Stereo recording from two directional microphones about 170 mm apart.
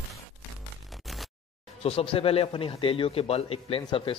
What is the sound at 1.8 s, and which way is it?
A man's voice, 35° left (ahead or behind).